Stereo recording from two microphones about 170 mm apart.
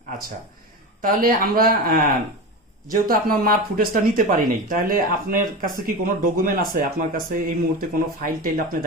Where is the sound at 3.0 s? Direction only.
60° right (ahead or behind).